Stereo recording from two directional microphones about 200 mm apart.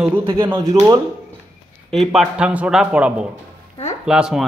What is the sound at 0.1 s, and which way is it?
Speech, 25° right (ahead or behind).